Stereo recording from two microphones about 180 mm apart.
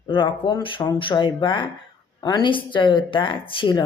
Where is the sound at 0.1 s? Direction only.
25° left (ahead or behind).